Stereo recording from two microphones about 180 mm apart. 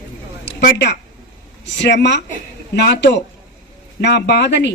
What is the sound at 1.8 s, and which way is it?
A woman's voice, 75° left (ahead or behind).